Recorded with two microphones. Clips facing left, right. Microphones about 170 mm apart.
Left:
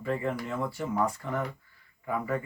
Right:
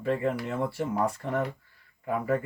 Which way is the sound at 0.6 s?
30° right (ahead or behind).